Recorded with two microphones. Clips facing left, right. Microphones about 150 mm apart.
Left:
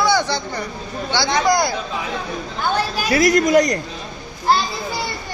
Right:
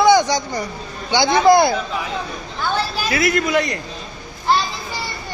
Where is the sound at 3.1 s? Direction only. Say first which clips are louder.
Left 5 dB; 40° left (ahead or behind).